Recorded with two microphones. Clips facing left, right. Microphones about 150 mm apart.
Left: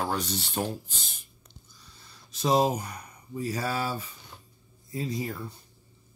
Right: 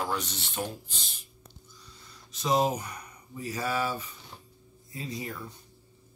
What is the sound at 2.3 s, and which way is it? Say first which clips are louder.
Speech: left 2 dB; 35° left (ahead or behind).